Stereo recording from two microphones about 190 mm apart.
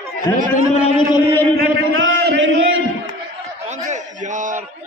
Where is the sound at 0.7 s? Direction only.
30° left (ahead or behind).